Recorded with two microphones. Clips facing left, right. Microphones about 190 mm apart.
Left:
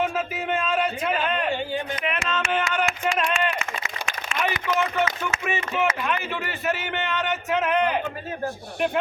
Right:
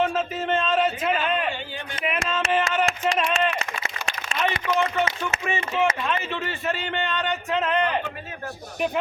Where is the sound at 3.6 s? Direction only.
30° right (ahead or behind).